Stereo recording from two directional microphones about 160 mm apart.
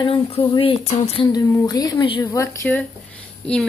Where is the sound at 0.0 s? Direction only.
35° left (ahead or behind).